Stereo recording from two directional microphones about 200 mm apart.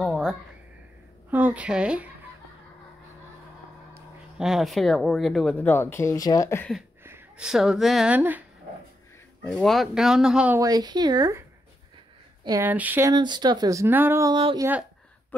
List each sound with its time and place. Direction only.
0.0 s a sound: centre (ahead or behind)
1.3 s speech: 10° right (ahead or behind)
4.4 s speech: centre (ahead or behind); by 6.7 s 15° left (ahead or behind)
7.0 s speech: 10° right (ahead or behind)
10.6 s speech: 20° right (ahead or behind)
12.4 s speech: 10° right (ahead or behind)
13.1 s speech: 20° right (ahead or behind)
14.3 s speech: 25° right (ahead or behind)